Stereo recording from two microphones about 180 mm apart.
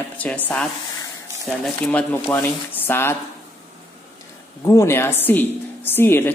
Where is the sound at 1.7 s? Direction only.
5° left (ahead or behind).